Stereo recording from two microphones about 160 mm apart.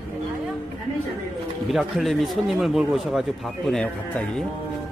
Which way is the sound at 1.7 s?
Centre (ahead or behind).